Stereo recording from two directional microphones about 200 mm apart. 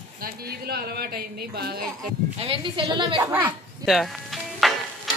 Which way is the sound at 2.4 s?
25° right (ahead or behind).